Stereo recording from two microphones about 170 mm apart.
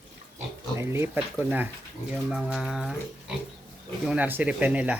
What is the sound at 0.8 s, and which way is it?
Speech, 15° right (ahead or behind).